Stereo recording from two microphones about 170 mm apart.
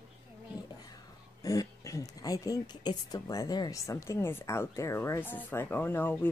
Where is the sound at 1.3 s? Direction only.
20° left (ahead or behind).